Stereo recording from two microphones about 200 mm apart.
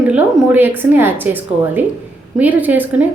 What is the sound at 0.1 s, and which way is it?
Speech, 10° right (ahead or behind).